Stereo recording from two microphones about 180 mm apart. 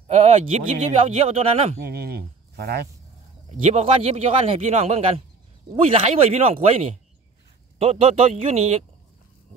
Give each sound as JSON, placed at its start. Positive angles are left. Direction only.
{"t": 0.0, "sound": "speech", "side_deg": -35}
{"t": 1.9, "sound": "speech", "side_deg": -60}
{"t": 3.4, "sound": "speech", "side_deg": -35}